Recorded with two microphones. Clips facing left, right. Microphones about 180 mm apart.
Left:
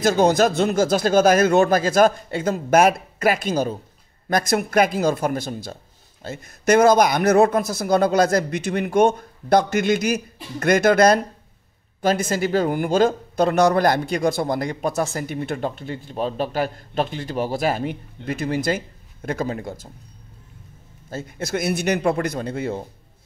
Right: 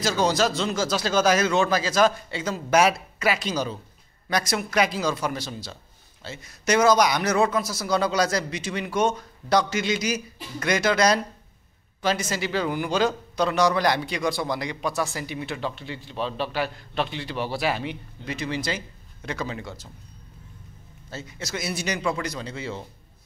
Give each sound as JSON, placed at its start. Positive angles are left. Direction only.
{"t": 0.0, "sound": "speech", "side_deg": 55}
{"t": 21.1, "sound": "speech", "side_deg": 55}